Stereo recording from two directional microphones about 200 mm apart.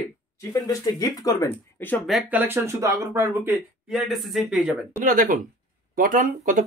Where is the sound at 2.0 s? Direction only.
Centre (ahead or behind).